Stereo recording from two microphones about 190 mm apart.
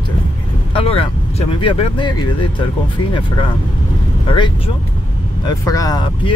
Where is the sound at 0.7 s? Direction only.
30° left (ahead or behind).